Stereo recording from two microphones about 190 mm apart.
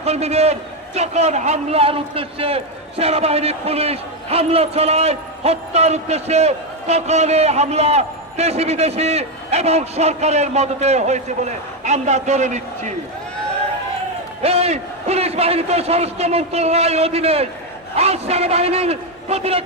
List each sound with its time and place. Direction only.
0.0 s a man's voice: 35° right (ahead or behind)
14.4 s a man's voice: 30° right (ahead or behind)